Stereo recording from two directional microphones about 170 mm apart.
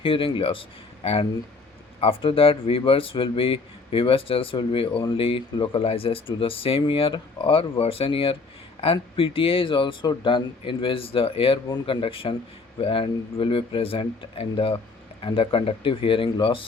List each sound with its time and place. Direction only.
0.0 s speech: 30° left (ahead or behind)